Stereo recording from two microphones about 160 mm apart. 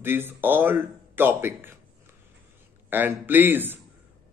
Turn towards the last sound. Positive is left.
turn(degrees=-10)  # may be behind; listen again after turning